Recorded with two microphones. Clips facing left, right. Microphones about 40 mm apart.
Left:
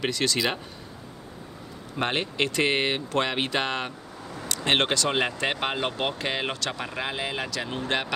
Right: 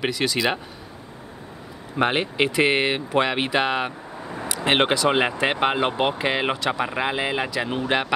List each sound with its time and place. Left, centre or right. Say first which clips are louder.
0.0 s speech: right 3 dB; centre
2.0 s speech: right 5 dB; centre